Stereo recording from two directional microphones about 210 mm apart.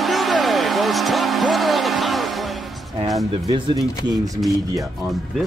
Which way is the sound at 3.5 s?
20° right (ahead or behind).